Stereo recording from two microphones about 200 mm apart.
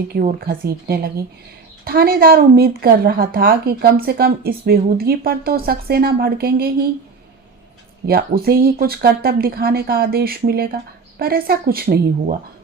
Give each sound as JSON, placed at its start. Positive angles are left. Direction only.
{"t": 0.1, "sound": "a woman's voice", "side_deg": -45}
{"t": 8.0, "sound": "a woman's voice", "side_deg": -50}